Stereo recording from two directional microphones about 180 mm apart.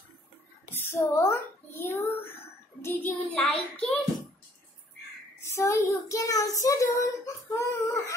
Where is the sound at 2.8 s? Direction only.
10° left (ahead or behind).